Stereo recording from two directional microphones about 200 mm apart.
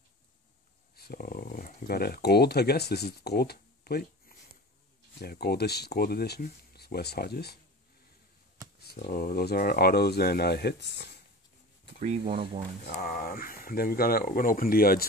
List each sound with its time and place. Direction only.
0.9 s speech: 50° left (ahead or behind)
9.0 s speech: 45° left (ahead or behind)
12.0 s speech: 30° right (ahead or behind)
12.9 s speech: 45° left (ahead or behind)